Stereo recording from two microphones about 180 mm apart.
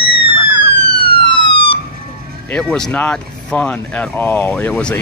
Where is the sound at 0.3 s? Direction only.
25° left (ahead or behind).